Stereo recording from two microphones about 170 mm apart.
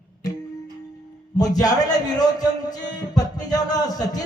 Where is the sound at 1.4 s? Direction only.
20° left (ahead or behind).